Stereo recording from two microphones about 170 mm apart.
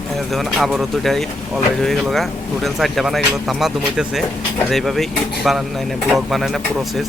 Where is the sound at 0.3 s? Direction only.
Centre (ahead or behind).